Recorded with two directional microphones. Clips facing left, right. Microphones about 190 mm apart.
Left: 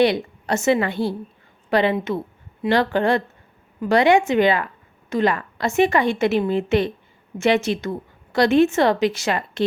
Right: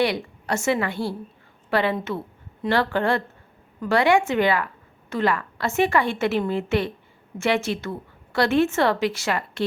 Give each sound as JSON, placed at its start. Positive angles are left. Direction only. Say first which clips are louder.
{"t": 0.0, "sound": "a woman's voice", "louder": "left 5 dB", "side_deg": 20}